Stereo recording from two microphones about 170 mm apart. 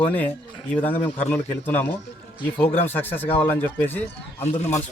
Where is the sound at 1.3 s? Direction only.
10° left (ahead or behind).